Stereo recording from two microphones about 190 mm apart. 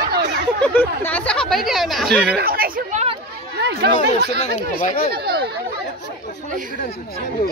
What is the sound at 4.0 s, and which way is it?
Speech, 35° left (ahead or behind).